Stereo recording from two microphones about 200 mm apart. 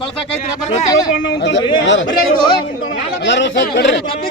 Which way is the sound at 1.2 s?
60° left (ahead or behind).